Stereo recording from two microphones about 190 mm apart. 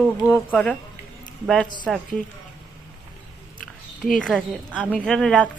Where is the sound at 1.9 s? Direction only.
5° left (ahead or behind).